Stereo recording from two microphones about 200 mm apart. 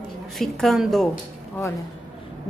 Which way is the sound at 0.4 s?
Centre (ahead or behind).